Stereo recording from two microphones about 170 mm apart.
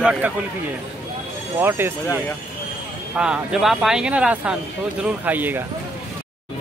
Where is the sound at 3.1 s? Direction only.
5° right (ahead or behind).